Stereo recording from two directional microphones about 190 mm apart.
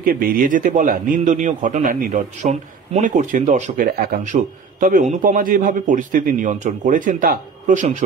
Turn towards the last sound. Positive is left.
turn(degrees=-40)  # may be behind; listen again after turning